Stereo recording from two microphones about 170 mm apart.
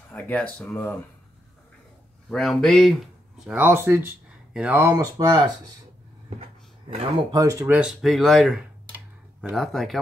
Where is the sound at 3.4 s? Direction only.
10° right (ahead or behind).